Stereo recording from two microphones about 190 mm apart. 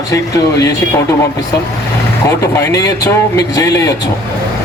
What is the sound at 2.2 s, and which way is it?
Speech, 15° left (ahead or behind).